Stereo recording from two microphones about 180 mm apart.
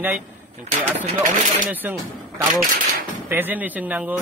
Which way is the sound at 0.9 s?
45° right (ahead or behind).